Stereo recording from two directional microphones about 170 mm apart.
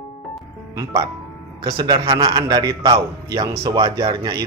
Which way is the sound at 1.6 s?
25° right (ahead or behind).